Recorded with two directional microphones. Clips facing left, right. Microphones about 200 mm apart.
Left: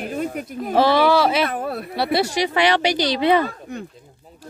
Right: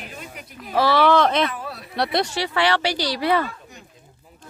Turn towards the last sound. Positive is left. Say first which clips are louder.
# left 4 dB
turn(degrees=20)  # may be behind; listen again after turning